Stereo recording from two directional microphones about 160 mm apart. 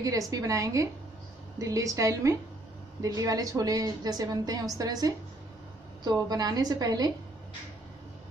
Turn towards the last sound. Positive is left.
turn(degrees=-25)  # may be behind; listen again after turning